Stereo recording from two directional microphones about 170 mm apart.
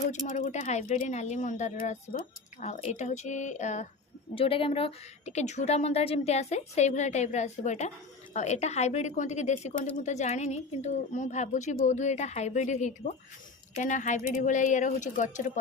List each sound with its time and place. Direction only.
0.3 s a woman's voice: 45° left (ahead or behind)
4.4 s a woman's voice: 30° left (ahead or behind); by 15.5 s 45° left (ahead or behind)